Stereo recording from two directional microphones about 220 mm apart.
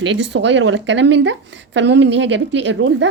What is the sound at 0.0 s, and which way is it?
Speech, 55° right (ahead or behind).